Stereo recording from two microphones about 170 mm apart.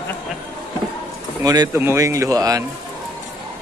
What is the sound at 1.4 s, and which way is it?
Speech, 25° right (ahead or behind).